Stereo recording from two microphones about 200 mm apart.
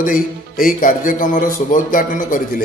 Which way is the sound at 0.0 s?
45° left (ahead or behind).